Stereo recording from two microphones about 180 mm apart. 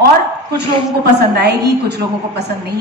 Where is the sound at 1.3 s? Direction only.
65° right (ahead or behind).